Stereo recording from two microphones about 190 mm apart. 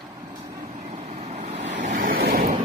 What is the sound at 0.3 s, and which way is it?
Vehicle, 15° right (ahead or behind).